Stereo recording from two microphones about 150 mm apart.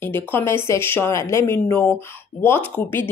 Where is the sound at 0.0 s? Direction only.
15° left (ahead or behind).